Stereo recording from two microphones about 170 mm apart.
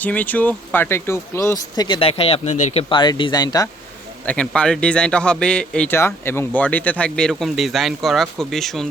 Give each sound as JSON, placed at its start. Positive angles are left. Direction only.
{"t": 0.0, "sound": "speech", "side_deg": 10}
{"t": 2.9, "sound": "speech", "side_deg": 25}
{"t": 4.3, "sound": "a man's voice", "side_deg": 5}